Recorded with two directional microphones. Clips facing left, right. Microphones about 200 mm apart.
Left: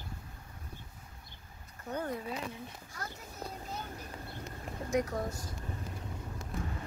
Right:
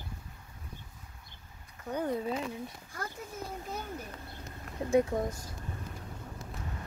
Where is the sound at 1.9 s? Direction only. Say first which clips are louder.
Right 4 dB; 15° right (ahead or behind).